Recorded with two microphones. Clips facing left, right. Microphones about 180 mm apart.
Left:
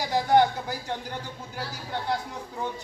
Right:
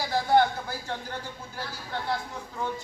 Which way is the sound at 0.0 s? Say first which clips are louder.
Left 2 dB; 15° left (ahead or behind).